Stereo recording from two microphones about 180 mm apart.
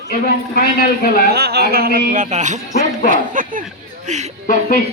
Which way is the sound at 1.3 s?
60° right (ahead or behind).